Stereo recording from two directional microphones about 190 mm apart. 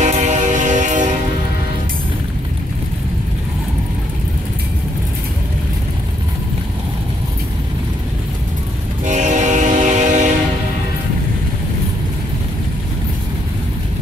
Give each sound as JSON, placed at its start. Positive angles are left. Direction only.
{"t": 0.0, "sound": "train", "side_deg": -40}
{"t": 9.0, "sound": "train", "side_deg": -40}